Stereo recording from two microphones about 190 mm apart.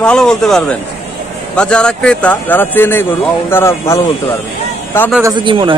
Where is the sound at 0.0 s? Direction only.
5° left (ahead or behind).